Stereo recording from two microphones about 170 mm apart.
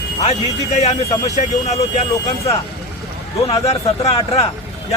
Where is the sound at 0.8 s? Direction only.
40° left (ahead or behind).